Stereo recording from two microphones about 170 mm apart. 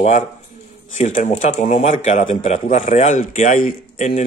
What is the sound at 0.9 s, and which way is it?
Speech, 45° left (ahead or behind).